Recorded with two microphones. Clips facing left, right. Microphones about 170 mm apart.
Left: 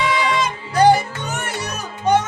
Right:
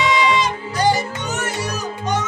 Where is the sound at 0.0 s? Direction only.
50° left (ahead or behind).